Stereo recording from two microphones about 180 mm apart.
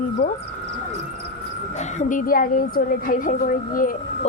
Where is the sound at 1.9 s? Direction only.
45° left (ahead or behind).